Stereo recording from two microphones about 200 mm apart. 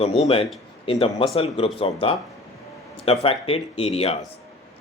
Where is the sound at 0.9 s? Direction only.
30° left (ahead or behind).